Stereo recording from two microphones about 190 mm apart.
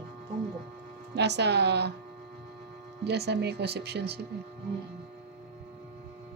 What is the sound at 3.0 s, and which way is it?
Speech, 60° right (ahead or behind).